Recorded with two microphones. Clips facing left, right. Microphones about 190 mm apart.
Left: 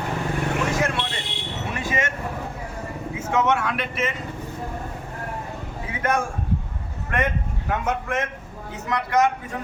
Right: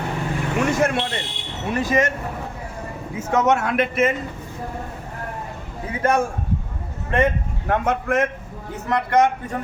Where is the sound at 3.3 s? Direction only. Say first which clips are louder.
Right 3 dB; 40° right (ahead or behind).